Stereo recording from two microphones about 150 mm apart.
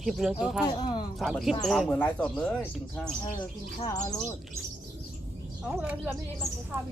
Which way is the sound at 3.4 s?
25° left (ahead or behind).